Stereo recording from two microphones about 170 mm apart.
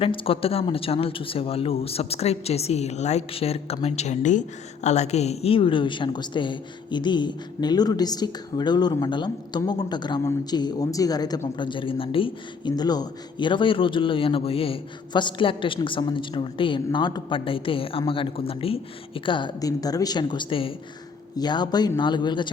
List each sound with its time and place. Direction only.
0.0 s a woman's voice: 30° left (ahead or behind)